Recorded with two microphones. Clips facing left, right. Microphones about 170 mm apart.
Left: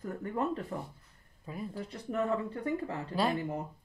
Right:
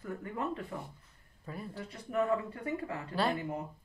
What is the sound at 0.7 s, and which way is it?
Speech, 45° left (ahead or behind).